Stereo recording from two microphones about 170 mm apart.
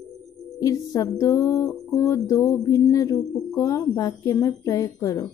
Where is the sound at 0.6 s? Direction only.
20° left (ahead or behind).